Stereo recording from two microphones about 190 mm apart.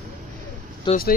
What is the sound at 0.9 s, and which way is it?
Speech, 25° left (ahead or behind).